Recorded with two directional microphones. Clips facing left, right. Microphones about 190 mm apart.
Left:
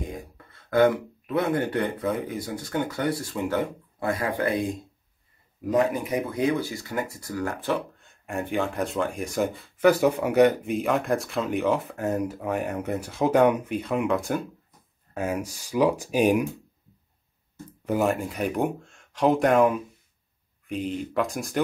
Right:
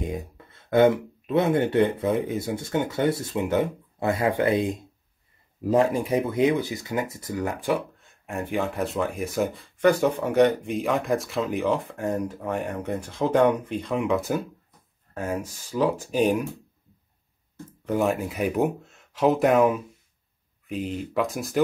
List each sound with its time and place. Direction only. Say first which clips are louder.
0.1 s speech: right 5 dB; 25° right (ahead or behind)
8.0 s speech: left 1 dB; centre (ahead or behind)
15.1 s speech: left 1 dB; 10° left (ahead or behind)
17.8 s speech: even; centre (ahead or behind)